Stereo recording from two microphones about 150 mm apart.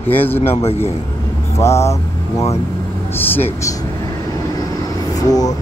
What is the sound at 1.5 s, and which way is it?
Speech, 20° left (ahead or behind).